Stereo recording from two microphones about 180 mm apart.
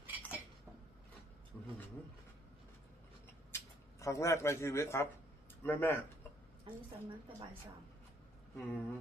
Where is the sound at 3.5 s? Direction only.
15° left (ahead or behind).